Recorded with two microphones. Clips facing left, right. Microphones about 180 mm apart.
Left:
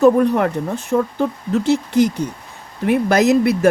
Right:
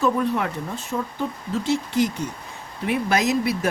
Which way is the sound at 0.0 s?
50° left (ahead or behind).